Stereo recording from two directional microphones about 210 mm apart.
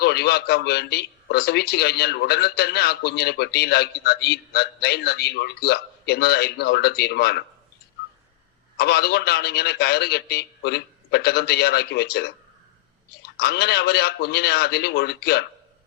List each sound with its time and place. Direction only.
0.0 s a man's voice: 50° left (ahead or behind)
8.8 s a man's voice: 50° left (ahead or behind)
13.4 s a man's voice: 50° left (ahead or behind)